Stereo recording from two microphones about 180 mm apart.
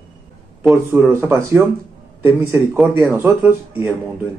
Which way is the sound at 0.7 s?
10° right (ahead or behind).